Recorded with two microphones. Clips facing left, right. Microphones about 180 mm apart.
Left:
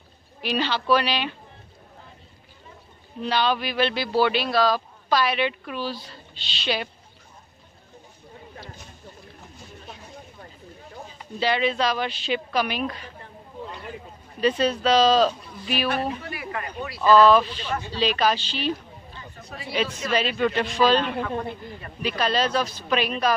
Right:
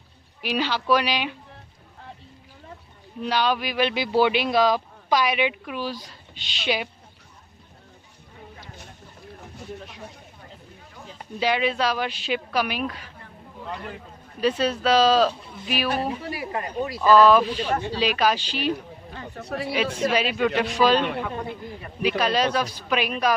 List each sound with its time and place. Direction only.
0.4 s speech: 10° right (ahead or behind)
3.2 s speech: 10° right (ahead or behind)
11.3 s speech: 10° right (ahead or behind)
14.4 s speech: 5° right (ahead or behind)
16.3 s speech: 35° right (ahead or behind)
17.0 s speech: 10° right (ahead or behind)
19.1 s a sound: 65° right (ahead or behind)
20.1 s speech: 10° right (ahead or behind)